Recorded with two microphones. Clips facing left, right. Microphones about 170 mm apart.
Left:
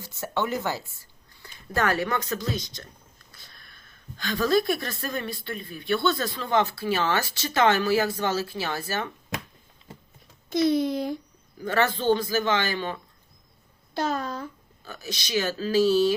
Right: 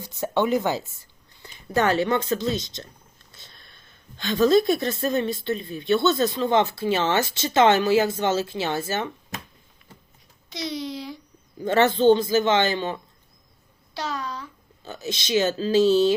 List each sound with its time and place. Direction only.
0.0 s a woman's voice: 20° right (ahead or behind)
3.3 s sniff: 25° right (ahead or behind)
4.2 s a woman's voice: 25° right (ahead or behind)
10.5 s speech: 50° left (ahead or behind)
11.6 s a woman's voice: 25° right (ahead or behind)
13.9 s a child's voice: 50° left (ahead or behind)
14.8 s a woman's voice: 25° right (ahead or behind)